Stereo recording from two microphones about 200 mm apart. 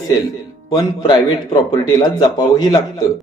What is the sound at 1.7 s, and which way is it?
Speech, 20° left (ahead or behind).